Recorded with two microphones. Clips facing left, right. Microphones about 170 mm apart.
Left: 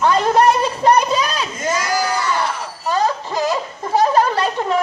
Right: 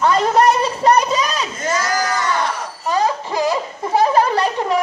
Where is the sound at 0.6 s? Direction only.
5° right (ahead or behind).